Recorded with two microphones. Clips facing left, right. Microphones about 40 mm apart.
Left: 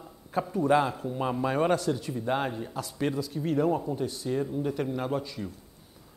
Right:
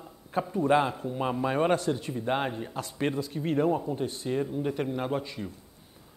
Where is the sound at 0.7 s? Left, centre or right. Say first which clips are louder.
Even; right.